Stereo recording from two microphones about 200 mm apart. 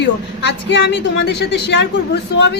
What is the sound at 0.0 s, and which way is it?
Speech, 60° left (ahead or behind).